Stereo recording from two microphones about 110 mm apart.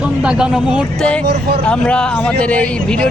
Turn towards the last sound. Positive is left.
turn(degrees=10)  # may be behind; listen again after turning